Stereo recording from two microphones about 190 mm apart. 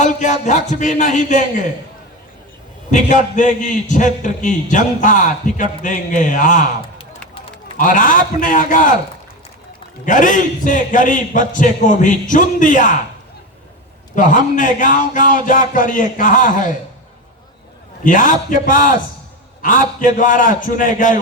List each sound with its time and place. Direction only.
0.0 s a man's voice: 40° left (ahead or behind)
2.9 s a man's voice: 40° left (ahead or behind)
7.8 s a man's voice: 45° left (ahead or behind)
10.1 s a man's voice: 40° left (ahead or behind)
14.2 s a man's voice: 45° left (ahead or behind)
18.0 s a man's voice: 45° left (ahead or behind)